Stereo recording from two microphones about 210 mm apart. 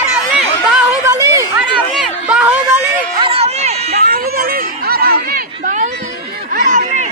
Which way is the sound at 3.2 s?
30° right (ahead or behind).